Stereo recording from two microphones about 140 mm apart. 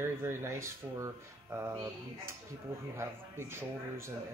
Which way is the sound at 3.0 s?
15° right (ahead or behind).